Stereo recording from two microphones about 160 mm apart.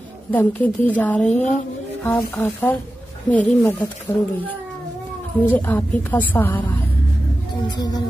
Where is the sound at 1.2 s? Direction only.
45° left (ahead or behind).